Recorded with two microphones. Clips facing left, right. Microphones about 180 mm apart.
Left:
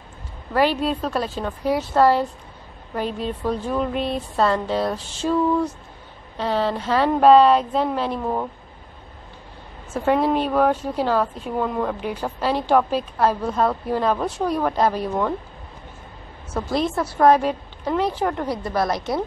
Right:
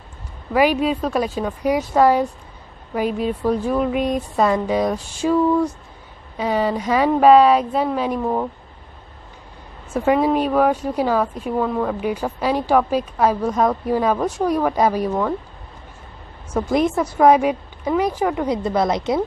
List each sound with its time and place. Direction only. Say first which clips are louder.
0.5 s a woman's voice: right 3 dB; 10° right (ahead or behind)
9.9 s a woman's voice: right 2 dB; 10° right (ahead or behind)
16.5 s a woman's voice: right 4 dB; 15° right (ahead or behind)
18.5 s a woman's voice: right 4 dB; 20° right (ahead or behind)